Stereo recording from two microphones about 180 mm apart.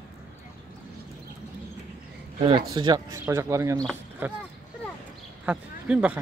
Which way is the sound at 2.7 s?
20° right (ahead or behind).